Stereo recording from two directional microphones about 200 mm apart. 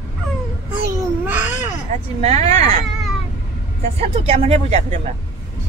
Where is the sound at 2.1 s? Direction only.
30° right (ahead or behind).